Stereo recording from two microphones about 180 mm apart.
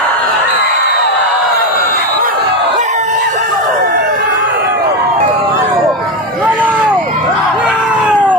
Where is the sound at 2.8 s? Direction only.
40° right (ahead or behind).